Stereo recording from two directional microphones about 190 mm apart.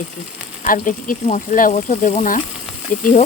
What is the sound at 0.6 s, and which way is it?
Speech, 45° left (ahead or behind).